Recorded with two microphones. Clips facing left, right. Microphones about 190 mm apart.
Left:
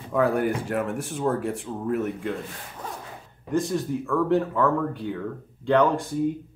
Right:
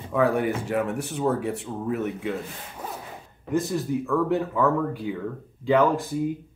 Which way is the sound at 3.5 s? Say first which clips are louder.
Even; centre (ahead or behind).